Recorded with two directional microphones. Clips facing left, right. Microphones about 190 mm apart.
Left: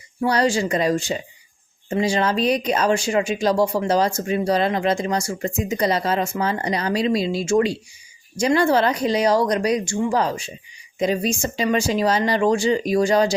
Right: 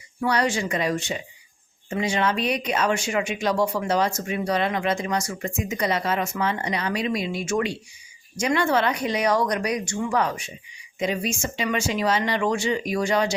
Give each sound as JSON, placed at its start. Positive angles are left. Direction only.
{"t": 0.2, "sound": "speech", "side_deg": 35}